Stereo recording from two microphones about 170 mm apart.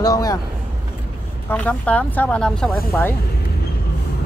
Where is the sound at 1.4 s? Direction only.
10° left (ahead or behind).